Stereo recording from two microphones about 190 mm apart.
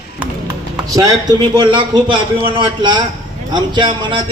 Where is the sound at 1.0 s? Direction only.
20° right (ahead or behind).